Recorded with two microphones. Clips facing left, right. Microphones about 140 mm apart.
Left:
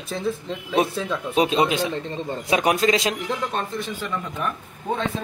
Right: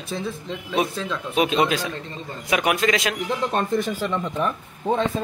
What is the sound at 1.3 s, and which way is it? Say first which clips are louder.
Speech: even; 30° left (ahead or behind).